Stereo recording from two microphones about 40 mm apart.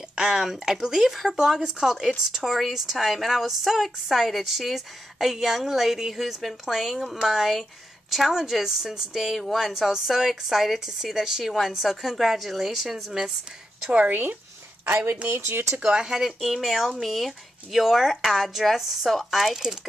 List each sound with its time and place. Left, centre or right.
0.1 s a woman's voice: centre
13.9 s speech: right
15.2 s speech: right
15.8 s a woman's voice: centre